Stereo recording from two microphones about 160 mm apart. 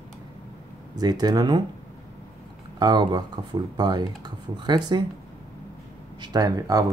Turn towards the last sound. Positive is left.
turn(degrees=-20)  # may be behind; listen again after turning